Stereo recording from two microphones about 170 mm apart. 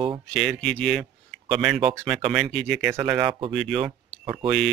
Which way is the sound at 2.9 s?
10° right (ahead or behind).